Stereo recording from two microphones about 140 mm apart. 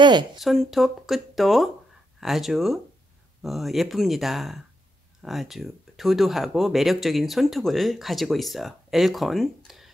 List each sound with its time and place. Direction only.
0.0 s speech: 30° right (ahead or behind)
0.4 s speech: centre (ahead or behind)